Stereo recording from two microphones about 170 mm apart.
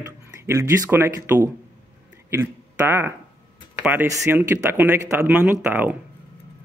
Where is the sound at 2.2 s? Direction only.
15° right (ahead or behind).